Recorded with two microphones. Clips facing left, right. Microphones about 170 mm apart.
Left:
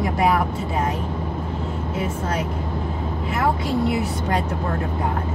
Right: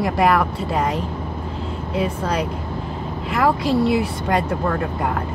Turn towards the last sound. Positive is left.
turn(degrees=-85)